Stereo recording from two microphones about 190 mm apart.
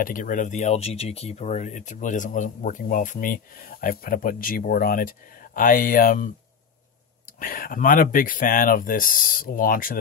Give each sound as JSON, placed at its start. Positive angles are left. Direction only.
{"t": 0.0, "sound": "speech", "side_deg": 45}
{"t": 7.3, "sound": "speech", "side_deg": 45}